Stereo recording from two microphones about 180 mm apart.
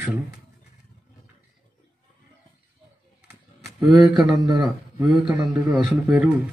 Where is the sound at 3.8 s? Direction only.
20° right (ahead or behind).